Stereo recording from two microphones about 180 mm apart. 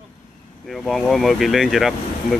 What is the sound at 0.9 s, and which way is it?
Speech, centre (ahead or behind).